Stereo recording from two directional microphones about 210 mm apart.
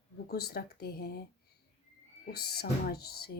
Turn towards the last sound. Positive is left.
turn(degrees=50)  # may be behind; listen again after turning